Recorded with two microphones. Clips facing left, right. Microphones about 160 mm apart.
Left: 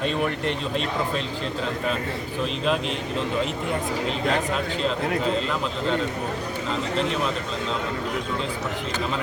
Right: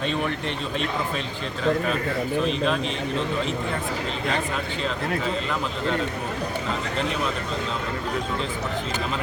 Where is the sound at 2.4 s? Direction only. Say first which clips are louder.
Right 1 dB; centre (ahead or behind).